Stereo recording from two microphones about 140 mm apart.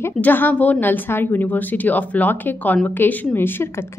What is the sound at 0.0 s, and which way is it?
A woman's voice, 15° left (ahead or behind).